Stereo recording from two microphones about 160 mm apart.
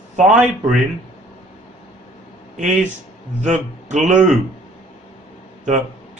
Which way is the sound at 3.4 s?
50° right (ahead or behind).